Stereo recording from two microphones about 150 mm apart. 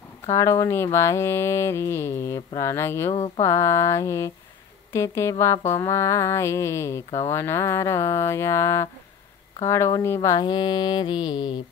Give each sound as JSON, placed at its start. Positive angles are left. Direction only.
{"t": 0.3, "sound": "speech", "side_deg": 20}
{"t": 0.9, "sound": "mantra", "side_deg": 20}
{"t": 3.1, "sound": "speech", "side_deg": 40}
{"t": 3.4, "sound": "speech", "side_deg": 20}